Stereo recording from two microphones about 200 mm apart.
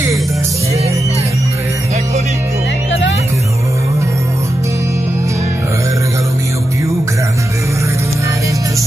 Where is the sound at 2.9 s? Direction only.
65° left (ahead or behind).